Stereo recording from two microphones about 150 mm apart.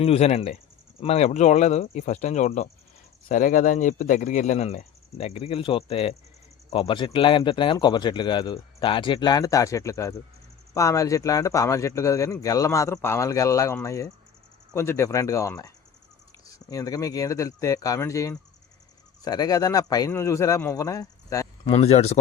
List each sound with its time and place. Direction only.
0.0 s a man's voice: 45° left (ahead or behind); by 21.4 s 20° left (ahead or behind)
21.6 s speech: 40° left (ahead or behind)